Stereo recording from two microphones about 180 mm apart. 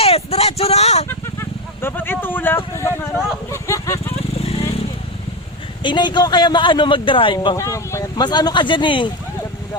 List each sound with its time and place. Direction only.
0.0 s a sound: 35° left (ahead or behind)
1.0 s vehicle: 15° left (ahead or behind)
4.4 s vehicle: 35° left (ahead or behind)
5.8 s speech: 25° left (ahead or behind)
7.3 s speech: 15° left (ahead or behind)